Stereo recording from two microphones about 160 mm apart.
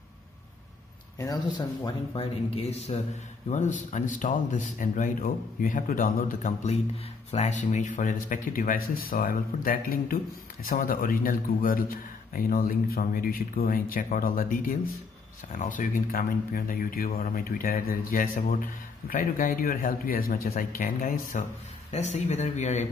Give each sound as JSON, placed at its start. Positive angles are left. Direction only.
{"t": 1.2, "sound": "speech", "side_deg": 25}
{"t": 2.1, "sound": "speech", "side_deg": 40}